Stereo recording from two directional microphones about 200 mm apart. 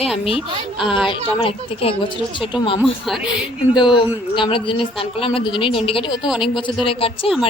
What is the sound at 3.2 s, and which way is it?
Speech, 5° right (ahead or behind).